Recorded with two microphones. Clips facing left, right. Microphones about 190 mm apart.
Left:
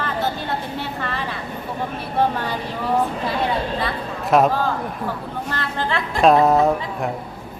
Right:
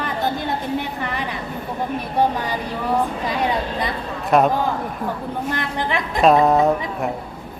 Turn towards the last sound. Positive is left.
turn(degrees=0)  # may be behind; listen again after turning